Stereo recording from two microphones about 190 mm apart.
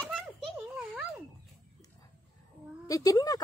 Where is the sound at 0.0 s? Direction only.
Centre (ahead or behind).